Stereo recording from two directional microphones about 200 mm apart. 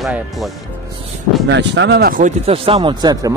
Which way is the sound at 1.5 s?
60° right (ahead or behind).